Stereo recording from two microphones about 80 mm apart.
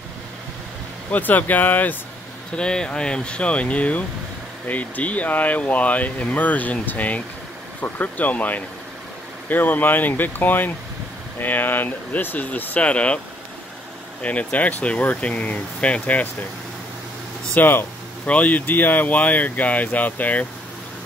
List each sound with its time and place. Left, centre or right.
1.1 s speech: left
2.5 s speech: centre
14.2 s speech: centre
17.6 s speech: left